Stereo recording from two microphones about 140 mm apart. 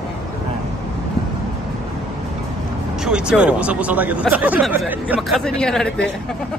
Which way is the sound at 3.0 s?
5° right (ahead or behind).